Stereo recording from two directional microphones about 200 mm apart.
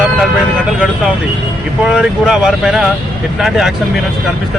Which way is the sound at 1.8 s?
5° right (ahead or behind).